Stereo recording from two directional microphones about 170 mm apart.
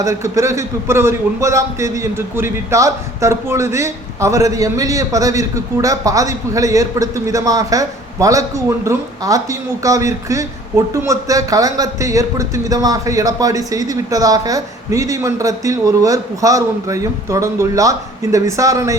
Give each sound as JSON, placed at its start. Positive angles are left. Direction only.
{"t": 0.0, "sound": "a man's voice", "side_deg": -20}